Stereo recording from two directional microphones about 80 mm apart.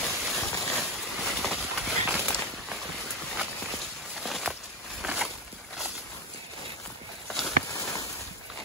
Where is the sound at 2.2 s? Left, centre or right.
Centre.